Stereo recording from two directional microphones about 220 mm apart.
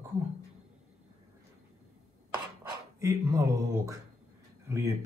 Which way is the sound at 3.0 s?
15° right (ahead or behind).